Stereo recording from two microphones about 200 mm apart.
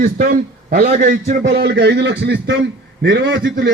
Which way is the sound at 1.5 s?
55° right (ahead or behind).